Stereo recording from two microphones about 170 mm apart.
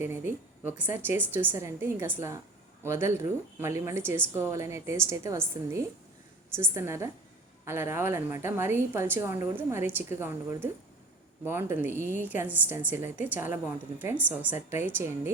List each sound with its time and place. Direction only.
0.0 s a woman's voice: 15° right (ahead or behind)
6.6 s a woman's voice: 15° right (ahead or behind)